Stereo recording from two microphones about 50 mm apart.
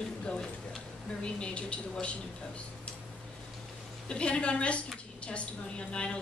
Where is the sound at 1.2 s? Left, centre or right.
Left.